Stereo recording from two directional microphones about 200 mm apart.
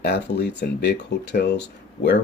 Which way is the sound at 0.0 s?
55° left (ahead or behind).